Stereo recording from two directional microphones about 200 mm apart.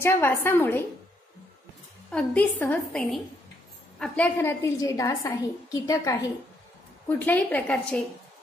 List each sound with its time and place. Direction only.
0.0 s a woman's voice: 15° left (ahead or behind)
2.0 s a woman's voice: 5° left (ahead or behind)